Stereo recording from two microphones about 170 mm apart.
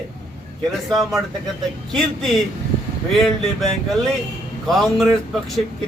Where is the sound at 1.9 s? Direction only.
Centre (ahead or behind).